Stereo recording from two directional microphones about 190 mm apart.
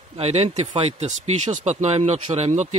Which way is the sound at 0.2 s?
35° right (ahead or behind).